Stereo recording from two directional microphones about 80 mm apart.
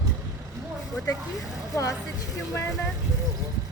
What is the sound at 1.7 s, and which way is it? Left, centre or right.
Speech, left.